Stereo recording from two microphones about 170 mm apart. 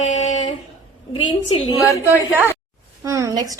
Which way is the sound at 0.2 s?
35° left (ahead or behind).